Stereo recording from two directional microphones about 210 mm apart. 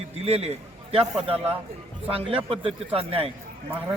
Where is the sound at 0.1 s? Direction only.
30° right (ahead or behind).